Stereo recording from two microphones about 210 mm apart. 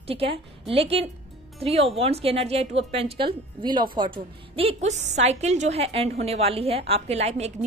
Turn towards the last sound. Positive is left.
turn(degrees=-30)  # may be behind; listen again after turning